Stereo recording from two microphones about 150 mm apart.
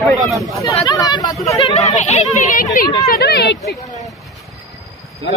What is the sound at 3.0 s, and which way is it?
Speech, 90° left.